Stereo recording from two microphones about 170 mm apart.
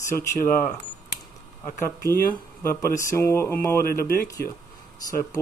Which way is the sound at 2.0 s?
15° left (ahead or behind).